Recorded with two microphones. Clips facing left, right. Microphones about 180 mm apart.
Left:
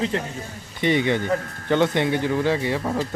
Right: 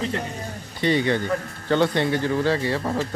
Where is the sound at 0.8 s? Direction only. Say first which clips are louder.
Left 1 dB; 20° left (ahead or behind).